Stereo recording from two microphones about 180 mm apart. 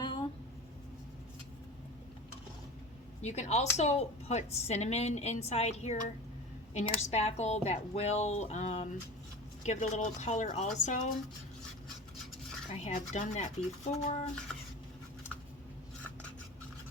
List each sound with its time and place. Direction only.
0.0 s a sound: 25° left (ahead or behind)
3.2 s a woman's voice: 40° left (ahead or behind)
12.7 s a woman's voice: 40° left (ahead or behind)